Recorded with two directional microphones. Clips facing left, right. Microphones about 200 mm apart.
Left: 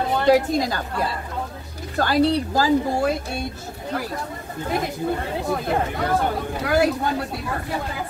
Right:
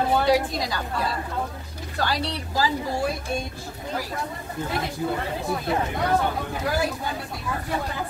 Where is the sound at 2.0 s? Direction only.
50° left (ahead or behind).